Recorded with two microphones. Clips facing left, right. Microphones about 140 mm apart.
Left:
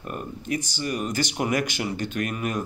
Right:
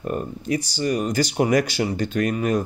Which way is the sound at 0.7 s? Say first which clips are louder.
Right 7 dB; 40° right (ahead or behind).